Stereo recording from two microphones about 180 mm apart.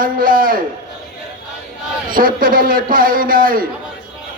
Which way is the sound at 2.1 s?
50° right (ahead or behind).